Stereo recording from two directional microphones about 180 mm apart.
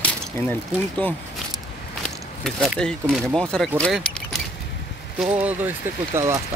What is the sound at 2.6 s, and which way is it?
Speech, centre (ahead or behind).